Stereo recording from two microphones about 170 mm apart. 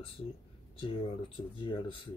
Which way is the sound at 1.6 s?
30° left (ahead or behind).